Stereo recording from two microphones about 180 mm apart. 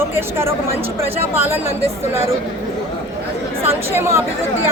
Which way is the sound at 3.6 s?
15° right (ahead or behind).